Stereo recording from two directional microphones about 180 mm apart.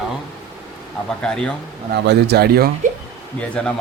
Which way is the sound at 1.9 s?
70° right (ahead or behind).